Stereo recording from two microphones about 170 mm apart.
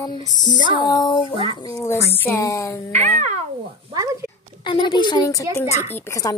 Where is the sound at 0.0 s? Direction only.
25° left (ahead or behind).